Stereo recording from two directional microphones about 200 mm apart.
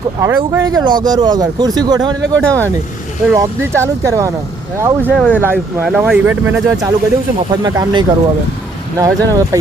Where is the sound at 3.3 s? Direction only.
15° right (ahead or behind).